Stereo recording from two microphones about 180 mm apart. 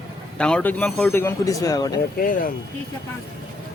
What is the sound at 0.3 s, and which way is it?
Speech, 5° left (ahead or behind).